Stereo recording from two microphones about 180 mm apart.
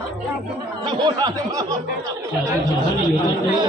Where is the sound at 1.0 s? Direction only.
25° right (ahead or behind).